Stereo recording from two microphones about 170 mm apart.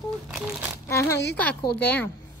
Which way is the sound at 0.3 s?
5° right (ahead or behind).